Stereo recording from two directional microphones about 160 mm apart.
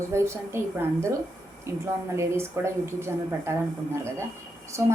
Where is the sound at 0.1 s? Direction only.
15° right (ahead or behind).